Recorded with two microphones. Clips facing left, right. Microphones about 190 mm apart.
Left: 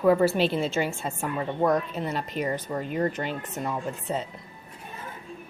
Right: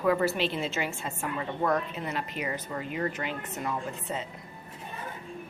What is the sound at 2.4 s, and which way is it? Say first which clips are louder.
Speech: left 5 dB; 35° left (ahead or behind).